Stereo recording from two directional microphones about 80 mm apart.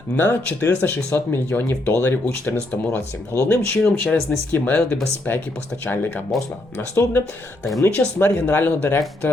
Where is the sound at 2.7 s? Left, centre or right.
Centre.